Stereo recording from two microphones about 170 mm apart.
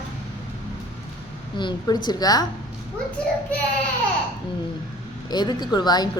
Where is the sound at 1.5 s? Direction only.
30° left (ahead or behind).